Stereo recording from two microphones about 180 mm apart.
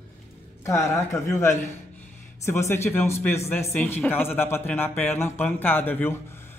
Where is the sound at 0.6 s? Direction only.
15° left (ahead or behind).